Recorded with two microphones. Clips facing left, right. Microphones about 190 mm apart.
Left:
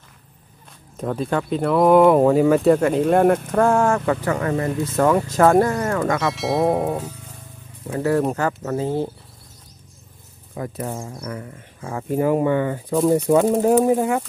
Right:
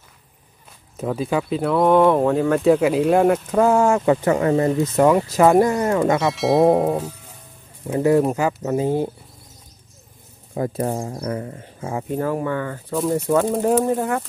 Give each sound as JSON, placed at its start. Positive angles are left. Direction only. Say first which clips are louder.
{"t": 0.9, "sound": "speech", "louder": "right 1 dB", "side_deg": -5}
{"t": 6.2, "sound": "speech", "louder": "right 6 dB", "side_deg": 0}
{"t": 7.9, "sound": "speech", "louder": "right 3 dB", "side_deg": -15}
{"t": 10.5, "sound": "speech", "louder": "right 5 dB", "side_deg": -35}
{"t": 12.1, "sound": "speech", "louder": "left 5 dB", "side_deg": 15}